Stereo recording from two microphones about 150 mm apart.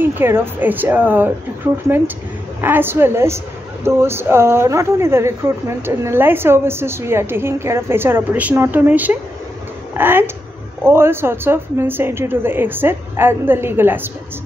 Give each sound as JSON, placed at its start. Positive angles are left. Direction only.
{"t": 0.0, "sound": "speech", "side_deg": -15}
{"t": 2.6, "sound": "speech", "side_deg": -15}